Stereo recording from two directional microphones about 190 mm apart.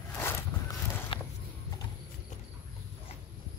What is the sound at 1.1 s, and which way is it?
Walk, 25° left (ahead or behind).